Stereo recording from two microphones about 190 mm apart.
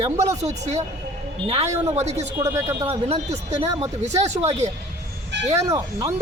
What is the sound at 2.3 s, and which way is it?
Speech, 15° right (ahead or behind).